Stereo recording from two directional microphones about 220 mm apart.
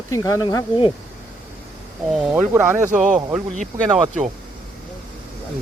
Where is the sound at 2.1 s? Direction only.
Centre (ahead or behind).